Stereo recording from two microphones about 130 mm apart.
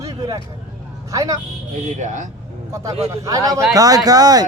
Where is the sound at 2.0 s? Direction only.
75° right (ahead or behind).